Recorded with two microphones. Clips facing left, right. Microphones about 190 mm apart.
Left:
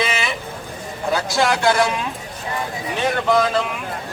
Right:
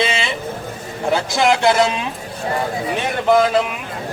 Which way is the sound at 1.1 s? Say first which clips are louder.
Right 3 dB; 20° right (ahead or behind).